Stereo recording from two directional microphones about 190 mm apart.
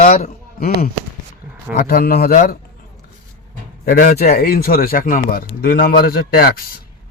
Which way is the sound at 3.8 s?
45° left (ahead or behind).